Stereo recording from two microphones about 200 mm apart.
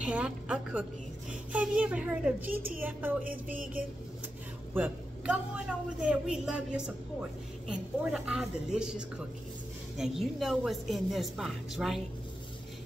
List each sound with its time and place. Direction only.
0.0 s a woman's voice: 5° right (ahead or behind)
2.5 s a woman's voice: 45° right (ahead or behind)
2.8 s a child's voice: 10° right (ahead or behind)
3.5 s a woman's voice: 45° right (ahead or behind)
4.7 s a woman's voice: 5° right (ahead or behind)
7.6 s a woman's voice: 5° right (ahead or behind)